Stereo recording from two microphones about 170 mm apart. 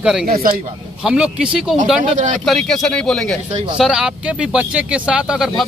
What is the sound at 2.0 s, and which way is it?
Speech, 45° right (ahead or behind).